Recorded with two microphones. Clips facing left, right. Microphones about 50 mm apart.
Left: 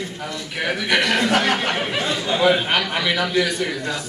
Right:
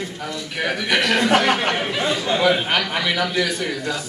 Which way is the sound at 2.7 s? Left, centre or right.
Centre.